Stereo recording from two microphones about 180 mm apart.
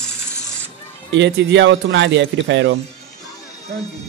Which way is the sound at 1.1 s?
80° right.